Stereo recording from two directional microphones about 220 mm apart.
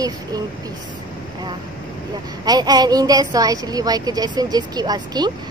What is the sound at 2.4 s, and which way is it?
Speech, 20° right (ahead or behind).